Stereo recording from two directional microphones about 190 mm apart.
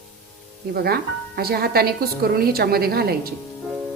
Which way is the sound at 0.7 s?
55° right (ahead or behind).